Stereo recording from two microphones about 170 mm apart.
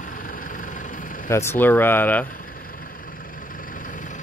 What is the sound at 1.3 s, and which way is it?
Speech, 15° left (ahead or behind).